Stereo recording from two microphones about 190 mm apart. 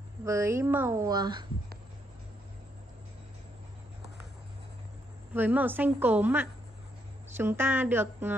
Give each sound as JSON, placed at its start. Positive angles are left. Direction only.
{"t": 0.2, "sound": "a woman's voice", "side_deg": -15}
{"t": 5.3, "sound": "a woman's voice", "side_deg": -10}